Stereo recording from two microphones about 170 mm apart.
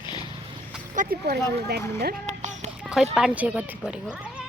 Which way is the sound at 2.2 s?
45° right (ahead or behind).